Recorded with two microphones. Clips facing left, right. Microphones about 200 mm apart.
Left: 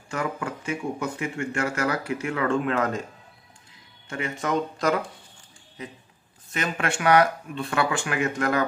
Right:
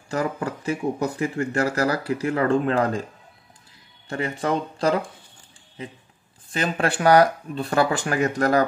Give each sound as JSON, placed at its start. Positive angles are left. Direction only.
{"t": 0.1, "sound": "speech", "side_deg": -35}
{"t": 4.1, "sound": "speech", "side_deg": -35}